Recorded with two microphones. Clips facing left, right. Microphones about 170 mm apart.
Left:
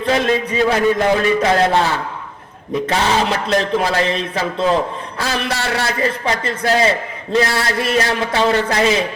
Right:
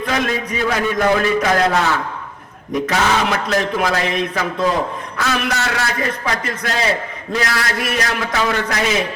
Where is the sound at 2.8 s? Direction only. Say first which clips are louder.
Left 1 dB; 30° left (ahead or behind).